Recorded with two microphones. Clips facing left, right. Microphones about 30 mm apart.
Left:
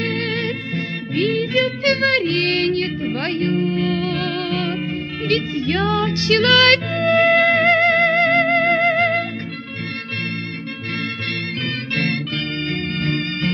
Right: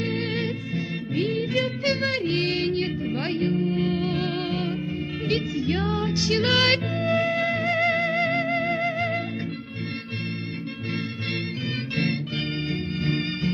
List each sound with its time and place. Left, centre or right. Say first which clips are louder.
0.3 s music: left 5 dB; left
6.4 s music: left 9 dB; left
11.9 s music: left 5 dB; left